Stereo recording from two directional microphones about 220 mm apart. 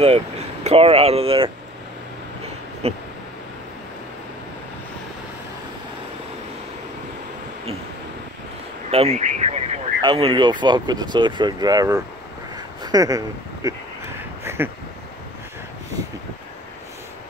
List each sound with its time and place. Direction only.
0.7 s speech: 25° right (ahead or behind)
2.8 s speech: 30° right (ahead or behind)
8.9 s speech: 25° right (ahead or behind)
12.5 s a sound: 20° right (ahead or behind)